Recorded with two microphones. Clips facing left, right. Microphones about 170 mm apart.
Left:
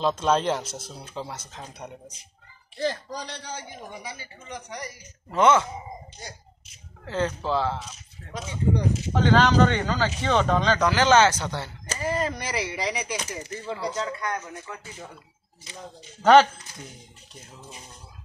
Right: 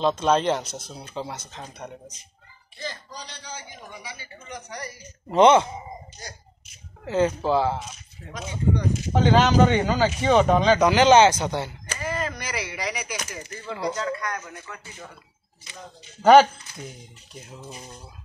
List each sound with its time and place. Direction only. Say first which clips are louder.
0.0 s speech: right 2 dB; centre (ahead or behind)
2.8 s a man's voice: left 8 dB; 65° left (ahead or behind)
4.5 s speech: even; 20° left (ahead or behind)
5.3 s speech: right 4 dB; 20° right (ahead or behind)
7.1 s speech: right 5 dB; 15° right (ahead or behind)
9.1 s speech: right 1 dB; 15° right (ahead or behind)
11.9 s speech: left 4 dB; 35° left (ahead or behind)
16.2 s speech: right 2 dB; 5° right (ahead or behind)